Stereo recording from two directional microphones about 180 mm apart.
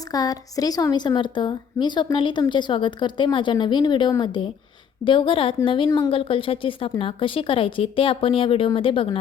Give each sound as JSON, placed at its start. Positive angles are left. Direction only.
{"t": 0.1, "sound": "a woman's voice", "side_deg": 20}